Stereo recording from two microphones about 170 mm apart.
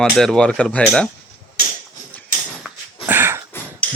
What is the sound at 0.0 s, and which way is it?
Speech, 5° left (ahead or behind).